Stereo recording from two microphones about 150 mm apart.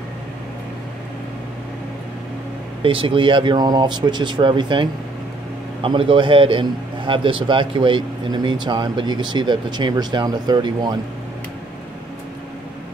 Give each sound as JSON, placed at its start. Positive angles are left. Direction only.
{"t": 2.8, "sound": "a man's voice", "side_deg": -35}